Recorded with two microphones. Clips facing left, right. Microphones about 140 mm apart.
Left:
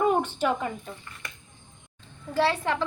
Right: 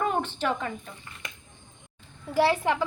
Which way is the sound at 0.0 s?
10° left (ahead or behind).